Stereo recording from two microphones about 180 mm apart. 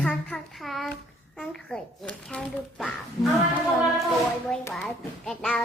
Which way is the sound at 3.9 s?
Centre (ahead or behind).